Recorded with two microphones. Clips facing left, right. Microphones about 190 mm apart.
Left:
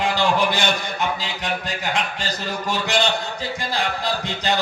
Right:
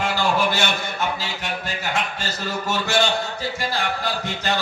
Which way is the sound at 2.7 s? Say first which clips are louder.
Even; 15° left (ahead or behind).